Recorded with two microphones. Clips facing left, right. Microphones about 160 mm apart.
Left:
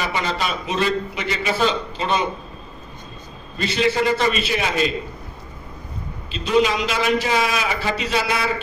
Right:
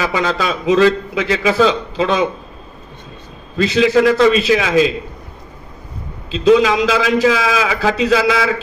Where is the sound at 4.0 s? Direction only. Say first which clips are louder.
Right 8 dB; 90° right.